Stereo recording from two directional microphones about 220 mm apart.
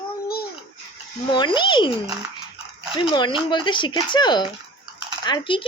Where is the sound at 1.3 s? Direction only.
20° left (ahead or behind).